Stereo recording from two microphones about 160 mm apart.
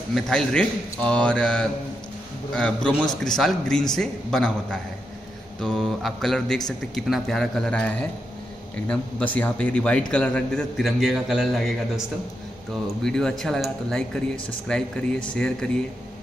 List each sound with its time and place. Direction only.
0.1 s a man's voice: 5° left (ahead or behind)